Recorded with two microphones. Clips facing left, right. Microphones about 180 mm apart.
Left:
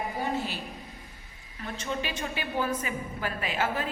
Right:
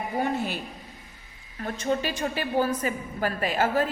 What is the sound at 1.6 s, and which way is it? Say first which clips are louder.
A woman's voice: right 6 dB; 40° right (ahead or behind).